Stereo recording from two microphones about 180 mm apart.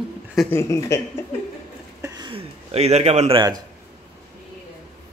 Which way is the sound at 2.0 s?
20° right (ahead or behind).